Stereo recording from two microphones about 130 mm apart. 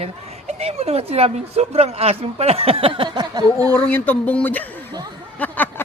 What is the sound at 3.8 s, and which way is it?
Speech, 15° left (ahead or behind).